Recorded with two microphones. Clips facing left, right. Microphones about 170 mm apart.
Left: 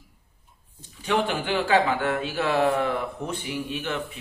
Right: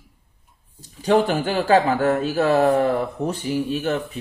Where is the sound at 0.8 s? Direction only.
40° right (ahead or behind).